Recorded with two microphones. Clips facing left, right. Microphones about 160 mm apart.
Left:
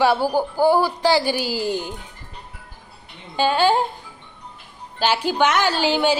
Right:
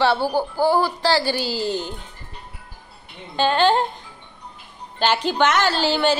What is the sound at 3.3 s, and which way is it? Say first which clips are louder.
A woman's voice: even; 10° left (ahead or behind).